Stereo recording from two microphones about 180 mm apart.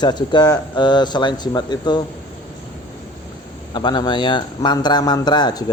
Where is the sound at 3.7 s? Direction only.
25° left (ahead or behind).